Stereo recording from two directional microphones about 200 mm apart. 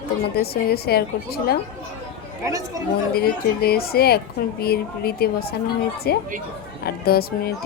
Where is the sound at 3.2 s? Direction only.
50° left (ahead or behind).